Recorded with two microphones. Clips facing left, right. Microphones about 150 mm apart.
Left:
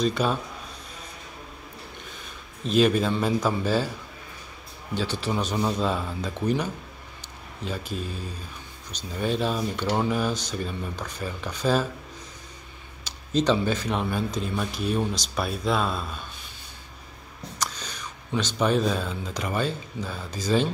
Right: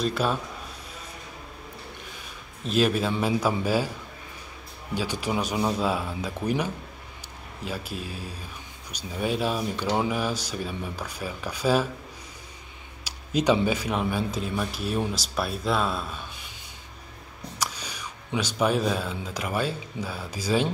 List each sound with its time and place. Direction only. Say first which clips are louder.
0.0 s speech: left 1 dB; 5° right (ahead or behind)
2.6 s speech: left 2 dB; 5° right (ahead or behind)
4.9 s speech: even; 10° right (ahead or behind)
13.0 s speech: left 1 dB; 10° right (ahead or behind)
17.6 s speech: even; 10° right (ahead or behind)